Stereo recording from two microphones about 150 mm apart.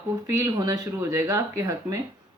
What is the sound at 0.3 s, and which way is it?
A woman's voice, 20° right (ahead or behind).